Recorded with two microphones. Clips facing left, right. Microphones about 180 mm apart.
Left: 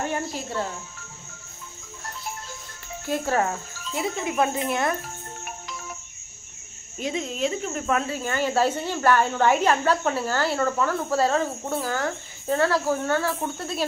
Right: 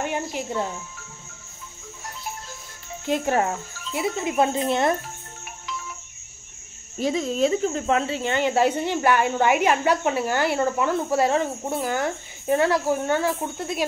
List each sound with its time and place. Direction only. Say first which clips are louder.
0.0 s insect: right 1 dB; 15° right (ahead or behind)
3.1 s cricket: right 2 dB; 20° right (ahead or behind)
7.0 s speech: right 5 dB; 35° right (ahead or behind); by 13.8 s 15° right (ahead or behind)